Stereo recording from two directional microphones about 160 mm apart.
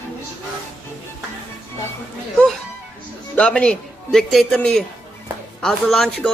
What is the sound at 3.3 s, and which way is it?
A man's voice, 5° left (ahead or behind).